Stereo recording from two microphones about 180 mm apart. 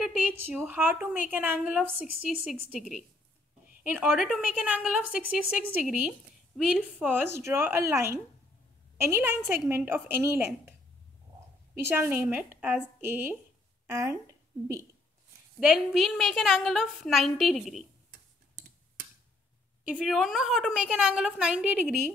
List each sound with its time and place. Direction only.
0.7 s a woman's voice: 10° right (ahead or behind)
11.9 s a woman's voice: 10° right (ahead or behind)
15.7 s a woman's voice: centre (ahead or behind)
19.8 s a woman's voice: 5° right (ahead or behind)